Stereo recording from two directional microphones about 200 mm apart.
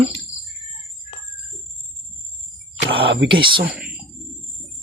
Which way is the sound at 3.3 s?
25° right (ahead or behind).